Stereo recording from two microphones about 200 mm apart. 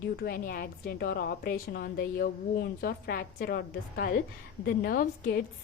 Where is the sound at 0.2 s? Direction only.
50° left (ahead or behind).